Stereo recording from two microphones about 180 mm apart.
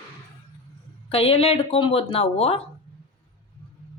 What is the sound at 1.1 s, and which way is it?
A woman's voice, 30° left (ahead or behind).